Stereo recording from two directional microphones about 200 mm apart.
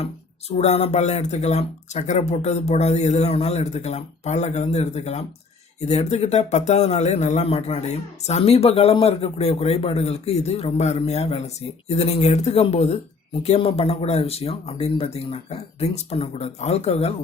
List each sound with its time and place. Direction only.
0.5 s speech: 35° left (ahead or behind)